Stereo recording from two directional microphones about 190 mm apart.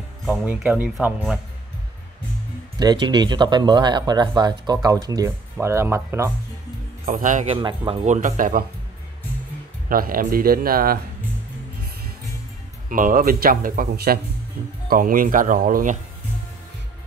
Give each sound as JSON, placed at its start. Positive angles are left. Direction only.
{"t": 0.2, "sound": "speech", "side_deg": -5}
{"t": 2.8, "sound": "speech", "side_deg": -20}
{"t": 7.1, "sound": "speech", "side_deg": -45}
{"t": 7.5, "sound": "a man's voice", "side_deg": -25}
{"t": 9.8, "sound": "speech", "side_deg": -50}
{"t": 12.9, "sound": "speech", "side_deg": -45}